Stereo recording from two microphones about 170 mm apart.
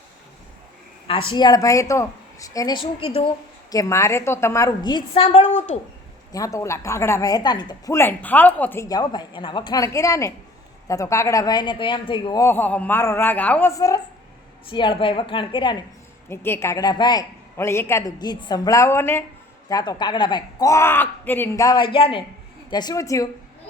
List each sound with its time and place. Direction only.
1.0 s a woman's voice: 30° left (ahead or behind)
3.7 s a woman's voice: 20° left (ahead or behind); by 5.8 s 40° left (ahead or behind)
6.3 s a woman's voice: 20° left (ahead or behind)
12.4 s a woman's voice: 10° left (ahead or behind); by 15.8 s 30° left (ahead or behind)
16.3 s a woman's voice: 15° left (ahead or behind)
21.9 s a woman's voice: 30° left (ahead or behind)